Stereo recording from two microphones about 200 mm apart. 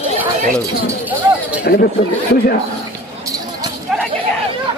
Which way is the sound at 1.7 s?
45° left (ahead or behind).